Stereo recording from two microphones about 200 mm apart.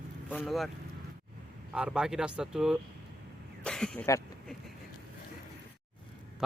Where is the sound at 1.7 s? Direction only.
5° right (ahead or behind).